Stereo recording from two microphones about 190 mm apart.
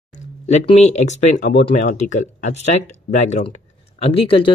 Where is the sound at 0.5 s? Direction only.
35° left (ahead or behind).